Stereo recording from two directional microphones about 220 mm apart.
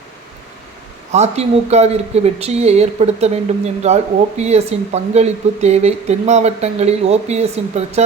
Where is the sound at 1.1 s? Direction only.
30° right (ahead or behind).